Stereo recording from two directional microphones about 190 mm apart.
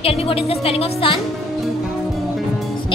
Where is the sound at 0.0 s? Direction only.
30° left (ahead or behind).